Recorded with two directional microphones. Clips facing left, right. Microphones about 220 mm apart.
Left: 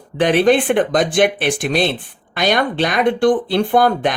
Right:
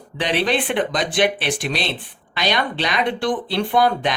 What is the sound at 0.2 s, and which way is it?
Speech, 50° left (ahead or behind).